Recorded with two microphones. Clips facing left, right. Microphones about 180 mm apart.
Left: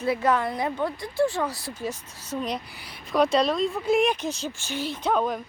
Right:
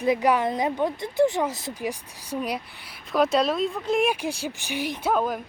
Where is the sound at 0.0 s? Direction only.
15° right (ahead or behind).